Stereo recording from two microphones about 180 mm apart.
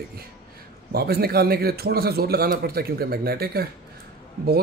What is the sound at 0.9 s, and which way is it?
Speech, 60° right (ahead or behind).